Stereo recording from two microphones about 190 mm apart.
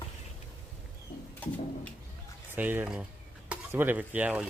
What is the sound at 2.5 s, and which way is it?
Speech, 10° right (ahead or behind).